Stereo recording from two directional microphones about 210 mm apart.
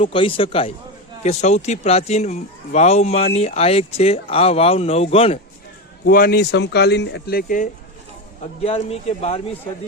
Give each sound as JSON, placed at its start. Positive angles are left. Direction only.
{"t": 0.0, "sound": "speech", "side_deg": 25}
{"t": 6.1, "sound": "speech", "side_deg": 45}
{"t": 8.6, "sound": "speech", "side_deg": 30}